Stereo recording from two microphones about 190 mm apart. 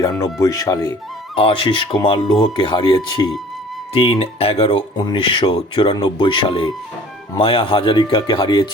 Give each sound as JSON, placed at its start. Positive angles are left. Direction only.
{"t": 0.3, "sound": "speech", "side_deg": 15}
{"t": 1.4, "sound": "speech", "side_deg": 30}